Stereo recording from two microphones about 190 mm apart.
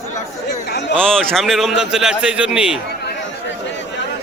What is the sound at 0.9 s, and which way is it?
A man's voice, 5° left (ahead or behind).